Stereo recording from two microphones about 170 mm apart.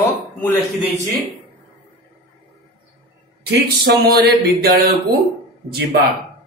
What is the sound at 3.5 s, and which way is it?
Speech, 70° right (ahead or behind).